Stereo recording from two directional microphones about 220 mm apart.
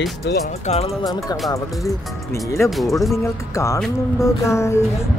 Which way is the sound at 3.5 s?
15° left (ahead or behind).